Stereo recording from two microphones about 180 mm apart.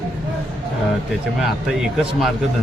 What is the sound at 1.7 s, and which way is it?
Speech, centre (ahead or behind).